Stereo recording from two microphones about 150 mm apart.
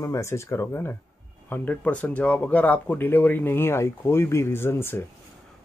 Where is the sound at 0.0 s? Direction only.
20° left (ahead or behind).